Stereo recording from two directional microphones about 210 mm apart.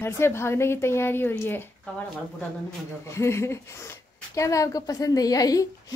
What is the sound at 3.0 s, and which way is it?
A woman's voice, 15° left (ahead or behind).